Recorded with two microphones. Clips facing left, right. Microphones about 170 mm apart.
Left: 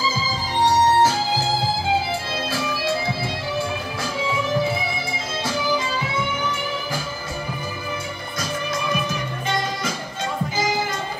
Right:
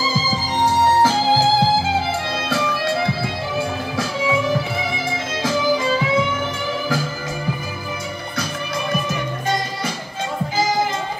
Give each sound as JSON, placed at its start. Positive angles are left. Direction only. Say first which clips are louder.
{"t": 1.0, "sound": "music", "louder": "right 4 dB", "side_deg": -90}
{"t": 2.5, "sound": "music", "louder": "right 4 dB", "side_deg": -65}